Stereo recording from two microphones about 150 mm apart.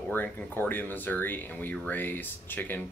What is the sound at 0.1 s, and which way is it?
Speech, 15° left (ahead or behind).